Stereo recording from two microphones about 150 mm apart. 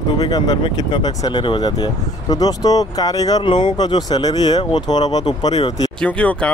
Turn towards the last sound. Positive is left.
turn(degrees=10)  # may be behind; listen again after turning